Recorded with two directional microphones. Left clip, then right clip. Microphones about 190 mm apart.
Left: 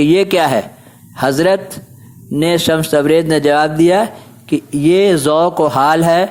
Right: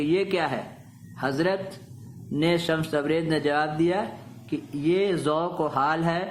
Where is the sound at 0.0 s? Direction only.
40° left (ahead or behind).